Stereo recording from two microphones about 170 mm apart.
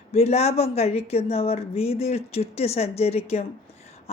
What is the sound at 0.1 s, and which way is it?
Speech, 40° left (ahead or behind).